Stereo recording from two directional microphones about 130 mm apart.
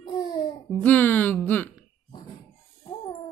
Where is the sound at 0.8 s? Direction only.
15° left (ahead or behind).